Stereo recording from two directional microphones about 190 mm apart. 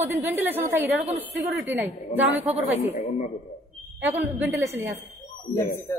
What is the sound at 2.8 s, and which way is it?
Speech, 40° left (ahead or behind).